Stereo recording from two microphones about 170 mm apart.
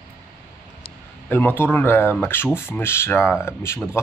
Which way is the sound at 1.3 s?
10° left (ahead or behind).